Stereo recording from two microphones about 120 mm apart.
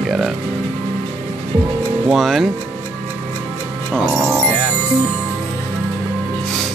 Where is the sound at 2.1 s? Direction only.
Centre (ahead or behind).